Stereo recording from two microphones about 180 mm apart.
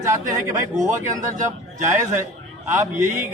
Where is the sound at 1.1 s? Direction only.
45° right (ahead or behind).